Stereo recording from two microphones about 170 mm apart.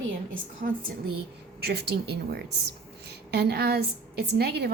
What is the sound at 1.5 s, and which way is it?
A woman's voice, 70° right (ahead or behind).